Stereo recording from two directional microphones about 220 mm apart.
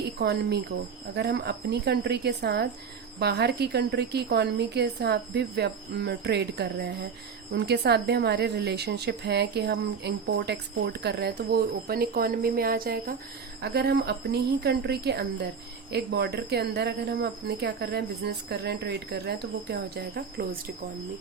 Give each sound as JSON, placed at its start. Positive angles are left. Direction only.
{"t": 0.2, "sound": "a woman's voice", "side_deg": -50}